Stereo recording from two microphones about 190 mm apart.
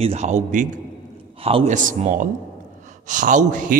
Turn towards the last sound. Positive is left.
turn(degrees=-45)  # may be behind; listen again after turning